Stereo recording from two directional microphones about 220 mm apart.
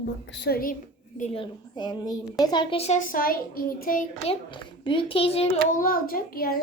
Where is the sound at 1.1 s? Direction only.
30° left (ahead or behind).